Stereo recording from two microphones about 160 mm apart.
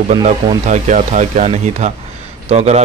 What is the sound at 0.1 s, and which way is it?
Speech, 45° right (ahead or behind).